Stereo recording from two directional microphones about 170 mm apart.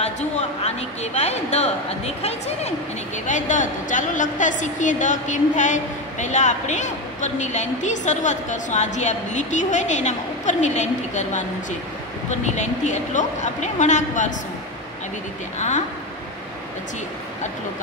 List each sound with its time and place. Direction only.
0.0 s a woman's voice: 40° left (ahead or behind)